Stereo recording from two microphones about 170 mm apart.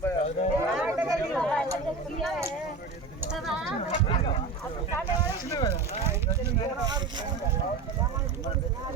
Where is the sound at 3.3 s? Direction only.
Centre (ahead or behind).